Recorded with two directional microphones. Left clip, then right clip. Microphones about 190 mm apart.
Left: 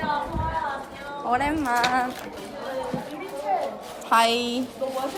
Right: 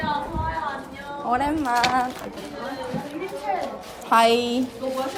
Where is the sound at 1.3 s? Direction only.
5° right (ahead or behind).